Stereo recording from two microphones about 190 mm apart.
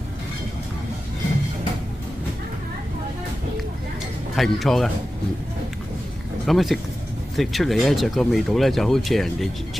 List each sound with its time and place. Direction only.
4.4 s speech: centre (ahead or behind)
6.4 s speech: centre (ahead or behind)